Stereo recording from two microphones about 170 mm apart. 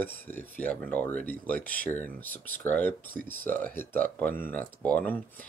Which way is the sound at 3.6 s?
55° right (ahead or behind).